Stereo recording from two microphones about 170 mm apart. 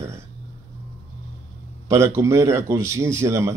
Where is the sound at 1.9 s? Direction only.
15° right (ahead or behind).